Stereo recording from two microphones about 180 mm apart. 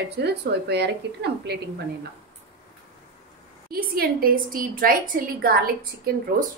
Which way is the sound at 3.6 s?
55° right (ahead or behind).